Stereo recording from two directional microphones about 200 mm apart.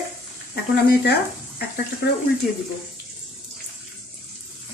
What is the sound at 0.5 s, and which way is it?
Speech, 55° left (ahead or behind).